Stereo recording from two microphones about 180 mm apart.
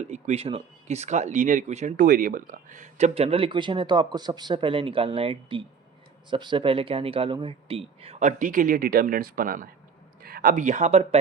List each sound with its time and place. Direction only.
0.0 s speech: 40° right (ahead or behind)